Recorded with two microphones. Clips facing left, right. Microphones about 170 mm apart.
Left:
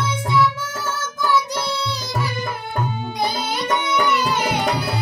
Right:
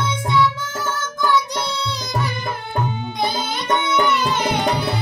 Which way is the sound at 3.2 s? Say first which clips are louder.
Even; 10° left (ahead or behind).